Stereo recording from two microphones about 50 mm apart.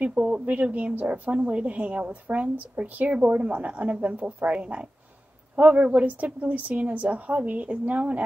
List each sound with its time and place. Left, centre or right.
0.0 s a woman's voice: right